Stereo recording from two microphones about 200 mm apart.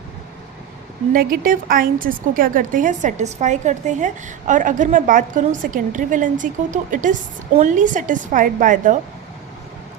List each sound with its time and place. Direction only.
1.1 s a woman's voice: 45° right (ahead or behind)